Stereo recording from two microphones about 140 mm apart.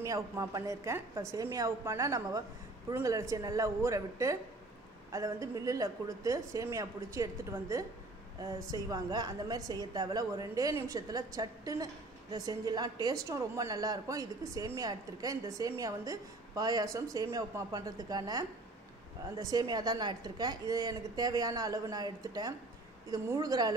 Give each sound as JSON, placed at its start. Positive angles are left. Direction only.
{"t": 0.0, "sound": "a woman's voice", "side_deg": -25}